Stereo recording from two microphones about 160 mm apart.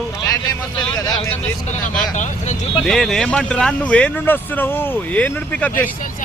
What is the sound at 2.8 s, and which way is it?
Speech, 5° left (ahead or behind).